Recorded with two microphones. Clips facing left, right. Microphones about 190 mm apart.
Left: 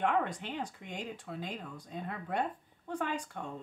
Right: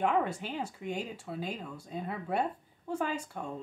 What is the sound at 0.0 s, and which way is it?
Speech, 10° right (ahead or behind).